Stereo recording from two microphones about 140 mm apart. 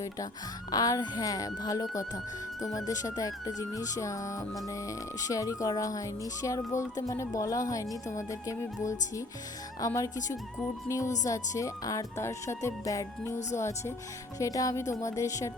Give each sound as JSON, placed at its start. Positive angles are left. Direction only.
{"t": 0.7, "sound": "speech", "side_deg": 25}